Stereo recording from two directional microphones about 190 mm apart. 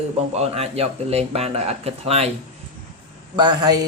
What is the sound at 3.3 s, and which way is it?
Speech, 20° right (ahead or behind).